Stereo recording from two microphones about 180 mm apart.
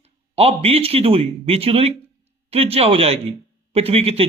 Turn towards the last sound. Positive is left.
turn(degrees=-35)  # may be behind; listen again after turning